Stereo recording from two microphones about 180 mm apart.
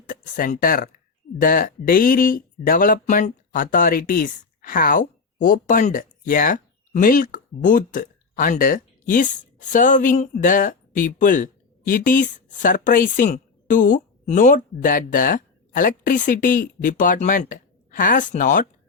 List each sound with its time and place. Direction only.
0.1 s speech: 50° left (ahead or behind)